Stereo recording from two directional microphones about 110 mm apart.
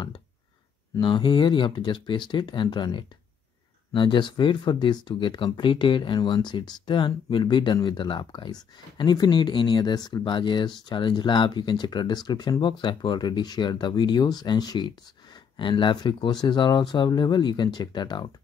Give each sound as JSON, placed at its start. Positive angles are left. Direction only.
{"t": 0.9, "sound": "speech", "side_deg": 45}